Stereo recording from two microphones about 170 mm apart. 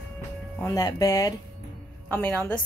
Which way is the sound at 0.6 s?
20° left (ahead or behind).